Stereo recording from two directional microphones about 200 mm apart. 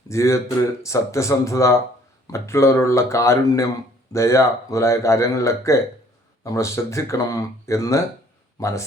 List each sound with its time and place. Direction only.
0.1 s a man's voice: 15° left (ahead or behind)